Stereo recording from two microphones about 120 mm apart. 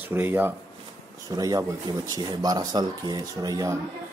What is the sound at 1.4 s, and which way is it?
Speech, 30° right (ahead or behind).